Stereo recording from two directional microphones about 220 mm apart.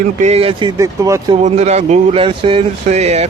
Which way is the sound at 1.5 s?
30° right (ahead or behind).